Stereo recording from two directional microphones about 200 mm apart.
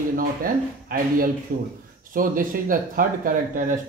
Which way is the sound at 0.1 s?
45° right (ahead or behind).